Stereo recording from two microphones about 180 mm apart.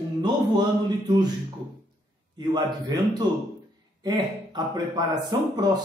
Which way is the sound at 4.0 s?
20° right (ahead or behind).